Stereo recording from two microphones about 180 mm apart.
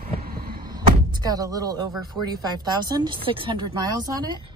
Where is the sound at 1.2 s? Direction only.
20° right (ahead or behind).